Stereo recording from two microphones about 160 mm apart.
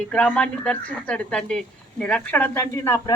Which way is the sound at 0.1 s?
5° left (ahead or behind).